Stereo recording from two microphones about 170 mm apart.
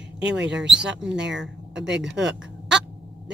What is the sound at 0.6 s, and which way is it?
Speech, 5° right (ahead or behind).